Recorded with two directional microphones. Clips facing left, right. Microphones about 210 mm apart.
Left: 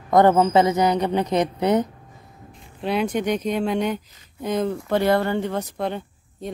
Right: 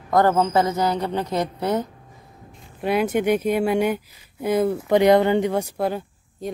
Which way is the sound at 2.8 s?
5° right (ahead or behind).